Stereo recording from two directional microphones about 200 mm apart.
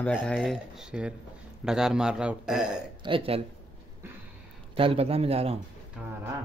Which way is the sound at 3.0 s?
25° right (ahead or behind).